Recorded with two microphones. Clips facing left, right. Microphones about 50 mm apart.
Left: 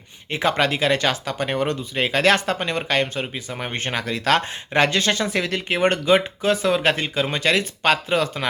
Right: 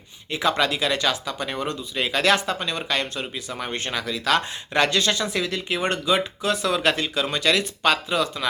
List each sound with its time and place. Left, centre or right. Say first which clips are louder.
0.3 s speech: left 2 dB; left
4.7 s speech: left 2 dB; left